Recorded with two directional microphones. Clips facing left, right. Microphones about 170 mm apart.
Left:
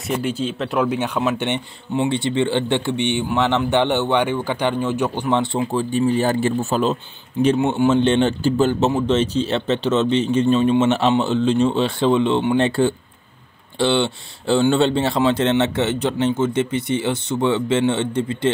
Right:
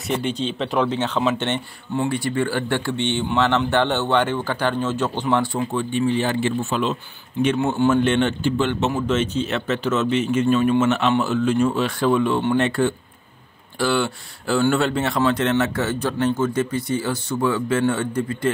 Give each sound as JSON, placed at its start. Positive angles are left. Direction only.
{"t": 0.1, "sound": "speech", "side_deg": 5}
{"t": 5.4, "sound": "speech", "side_deg": 25}
{"t": 7.5, "sound": "speech", "side_deg": 20}
{"t": 8.0, "sound": "speech", "side_deg": 30}